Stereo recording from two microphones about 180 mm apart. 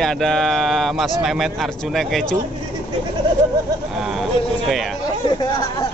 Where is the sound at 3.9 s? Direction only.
Centre (ahead or behind).